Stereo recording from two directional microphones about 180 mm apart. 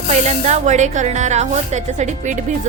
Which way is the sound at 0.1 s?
40° right (ahead or behind).